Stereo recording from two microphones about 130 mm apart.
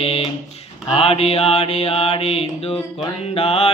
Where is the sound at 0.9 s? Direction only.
50° left (ahead or behind).